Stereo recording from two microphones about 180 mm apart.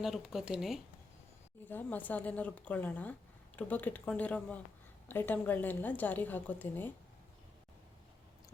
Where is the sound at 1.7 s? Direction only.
10° left (ahead or behind).